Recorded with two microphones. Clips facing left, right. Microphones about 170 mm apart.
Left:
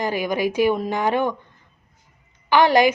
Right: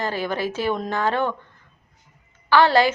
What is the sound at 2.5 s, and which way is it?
Speech, 15° left (ahead or behind).